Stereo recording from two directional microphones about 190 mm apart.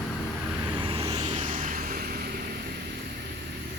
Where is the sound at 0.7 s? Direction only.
25° right (ahead or behind).